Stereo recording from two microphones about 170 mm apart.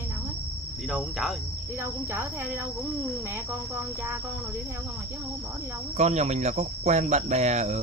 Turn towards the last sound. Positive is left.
turn(degrees=-40)  # may be behind; listen again after turning